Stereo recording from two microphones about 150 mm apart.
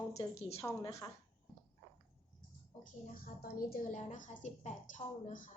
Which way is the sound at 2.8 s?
75° left (ahead or behind).